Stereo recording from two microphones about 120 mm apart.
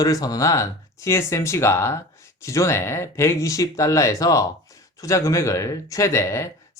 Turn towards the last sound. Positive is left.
turn(degrees=25)  # may be behind; listen again after turning